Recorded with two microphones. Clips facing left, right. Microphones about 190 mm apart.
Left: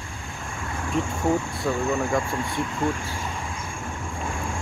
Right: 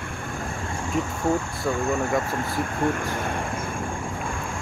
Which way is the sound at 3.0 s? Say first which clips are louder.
Right 5 dB; 55° right (ahead or behind).